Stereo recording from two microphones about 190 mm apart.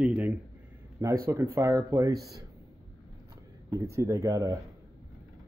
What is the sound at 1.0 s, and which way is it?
Speech, 20° right (ahead or behind).